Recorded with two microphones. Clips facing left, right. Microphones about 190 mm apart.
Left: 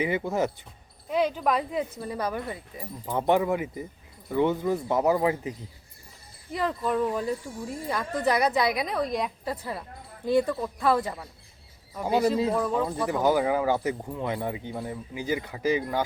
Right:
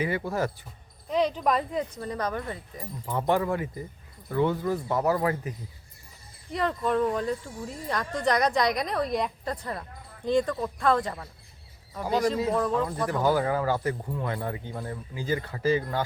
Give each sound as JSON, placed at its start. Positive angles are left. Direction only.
{"t": 0.0, "sound": "speech", "side_deg": 20}
{"t": 1.0, "sound": "speech", "side_deg": 5}
{"t": 6.5, "sound": "speech", "side_deg": 0}
{"t": 12.5, "sound": "speech", "side_deg": 5}
{"t": 13.0, "sound": "speech", "side_deg": 15}